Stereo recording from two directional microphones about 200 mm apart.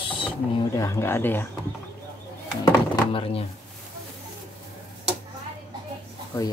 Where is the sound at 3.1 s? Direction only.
30° left (ahead or behind).